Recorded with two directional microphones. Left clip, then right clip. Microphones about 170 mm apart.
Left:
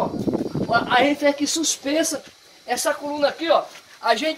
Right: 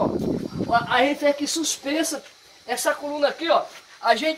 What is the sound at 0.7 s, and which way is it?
Speech, 55° left (ahead or behind).